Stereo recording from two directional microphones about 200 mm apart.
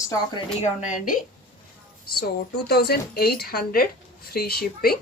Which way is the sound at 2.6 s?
55° left (ahead or behind).